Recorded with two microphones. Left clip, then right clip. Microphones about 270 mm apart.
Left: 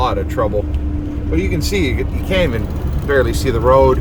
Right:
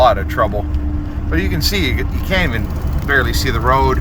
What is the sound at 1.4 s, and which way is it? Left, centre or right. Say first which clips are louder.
Speech: even; centre.